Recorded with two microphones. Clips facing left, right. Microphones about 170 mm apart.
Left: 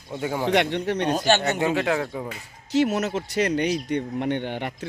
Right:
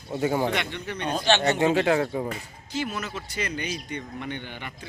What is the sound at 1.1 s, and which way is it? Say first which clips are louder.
Speech: left 1 dB; 40° left (ahead or behind).